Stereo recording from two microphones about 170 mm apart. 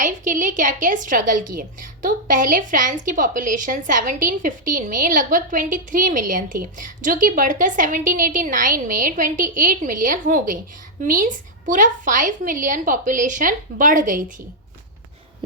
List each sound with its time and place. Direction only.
0.0 s a woman's voice: 50° right (ahead or behind)